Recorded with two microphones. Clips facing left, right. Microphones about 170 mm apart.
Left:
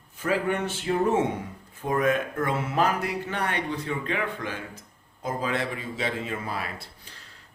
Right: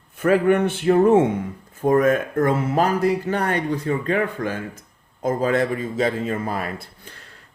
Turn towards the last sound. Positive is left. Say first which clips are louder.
# right 6 dB
turn(degrees=-50)  # may be behind; listen again after turning